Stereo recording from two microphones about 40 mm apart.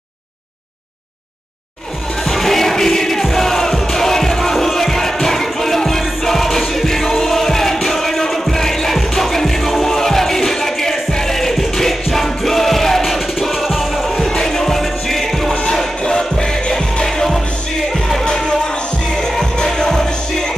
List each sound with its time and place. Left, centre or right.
2.2 s music: centre
14.2 s music: centre
16.0 s music: centre